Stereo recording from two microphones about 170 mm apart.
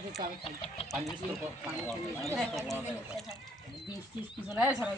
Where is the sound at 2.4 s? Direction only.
Centre (ahead or behind).